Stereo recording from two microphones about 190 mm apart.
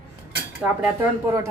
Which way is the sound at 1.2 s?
15° right (ahead or behind).